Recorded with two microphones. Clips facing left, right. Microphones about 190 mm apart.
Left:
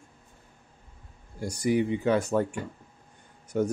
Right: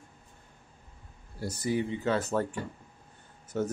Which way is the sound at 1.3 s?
15° left (ahead or behind).